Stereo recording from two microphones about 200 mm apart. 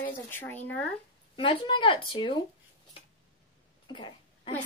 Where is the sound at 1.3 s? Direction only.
25° left (ahead or behind).